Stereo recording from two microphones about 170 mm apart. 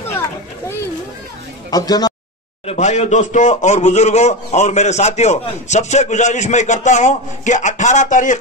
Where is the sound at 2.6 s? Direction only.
40° left (ahead or behind).